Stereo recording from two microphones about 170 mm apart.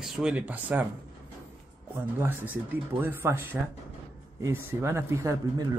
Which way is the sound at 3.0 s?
15° right (ahead or behind).